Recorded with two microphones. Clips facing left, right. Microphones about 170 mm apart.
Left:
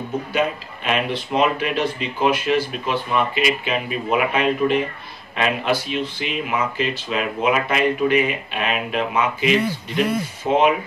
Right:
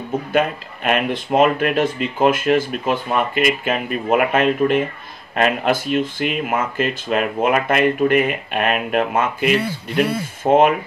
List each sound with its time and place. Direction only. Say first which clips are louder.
0.3 s speech: right 4 dB; 50° right (ahead or behind)